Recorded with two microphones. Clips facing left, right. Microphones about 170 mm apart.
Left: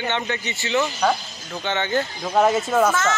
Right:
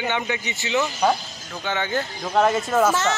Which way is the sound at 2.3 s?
5° left (ahead or behind).